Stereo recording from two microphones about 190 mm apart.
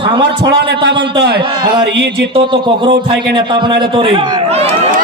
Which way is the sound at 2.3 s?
25° right (ahead or behind).